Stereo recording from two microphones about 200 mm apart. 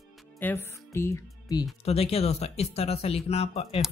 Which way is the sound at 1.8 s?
30° left (ahead or behind).